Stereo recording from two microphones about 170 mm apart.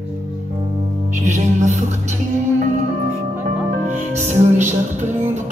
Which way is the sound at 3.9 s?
40° right (ahead or behind).